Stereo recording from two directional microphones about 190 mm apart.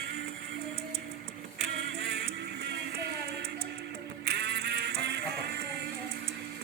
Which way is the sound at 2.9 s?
60° right (ahead or behind).